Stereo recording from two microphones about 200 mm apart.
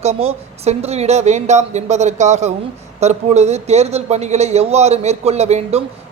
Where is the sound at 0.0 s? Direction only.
30° right (ahead or behind).